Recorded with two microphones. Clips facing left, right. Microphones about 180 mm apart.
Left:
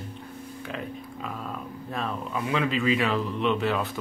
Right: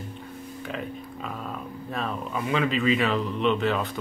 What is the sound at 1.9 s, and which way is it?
Speech, centre (ahead or behind).